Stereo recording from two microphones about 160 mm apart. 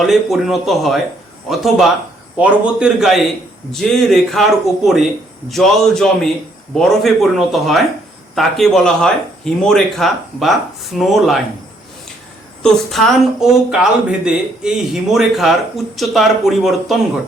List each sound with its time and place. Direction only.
0.0 s speech: centre (ahead or behind)
12.6 s speech: centre (ahead or behind)